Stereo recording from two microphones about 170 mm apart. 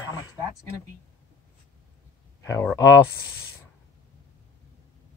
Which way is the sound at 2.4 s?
15° left (ahead or behind).